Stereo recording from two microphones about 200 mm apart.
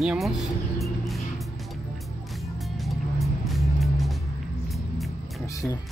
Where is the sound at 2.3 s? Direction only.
Centre (ahead or behind).